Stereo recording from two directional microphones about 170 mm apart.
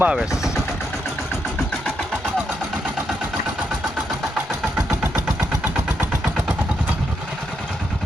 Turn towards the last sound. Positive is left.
turn(degrees=-5)  # may be behind; listen again after turning